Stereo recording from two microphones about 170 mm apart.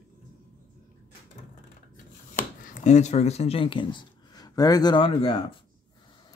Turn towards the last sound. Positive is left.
turn(degrees=30)  # may be behind; listen again after turning